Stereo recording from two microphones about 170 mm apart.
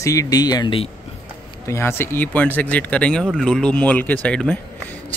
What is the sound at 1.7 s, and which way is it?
A man's voice, 15° left (ahead or behind).